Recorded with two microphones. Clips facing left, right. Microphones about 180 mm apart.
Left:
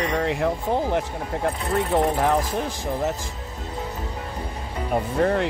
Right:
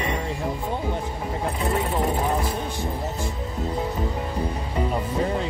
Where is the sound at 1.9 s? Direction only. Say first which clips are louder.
Left 4 dB; 85° left.